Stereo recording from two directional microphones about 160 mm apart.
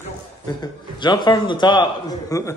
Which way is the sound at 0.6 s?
30° left (ahead or behind).